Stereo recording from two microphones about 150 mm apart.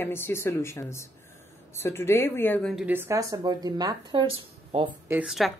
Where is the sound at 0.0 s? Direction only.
15° left (ahead or behind).